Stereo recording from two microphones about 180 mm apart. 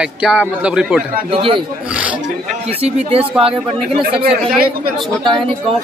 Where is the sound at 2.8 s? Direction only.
35° right (ahead or behind).